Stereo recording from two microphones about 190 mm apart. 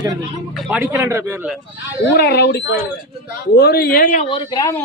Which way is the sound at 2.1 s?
55° left (ahead or behind).